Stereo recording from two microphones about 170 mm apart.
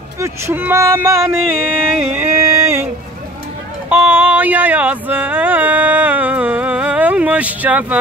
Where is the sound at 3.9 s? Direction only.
10° right (ahead or behind).